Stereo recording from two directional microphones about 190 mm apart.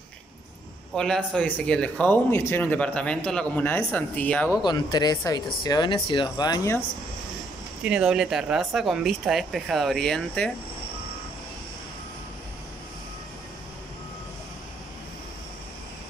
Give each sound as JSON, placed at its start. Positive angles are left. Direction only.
{"t": 0.9, "sound": "speech", "side_deg": 5}
{"t": 4.6, "sound": "speech", "side_deg": 20}
{"t": 7.8, "sound": "speech", "side_deg": -5}